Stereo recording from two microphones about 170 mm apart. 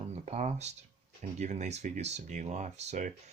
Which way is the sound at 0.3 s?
45° right (ahead or behind).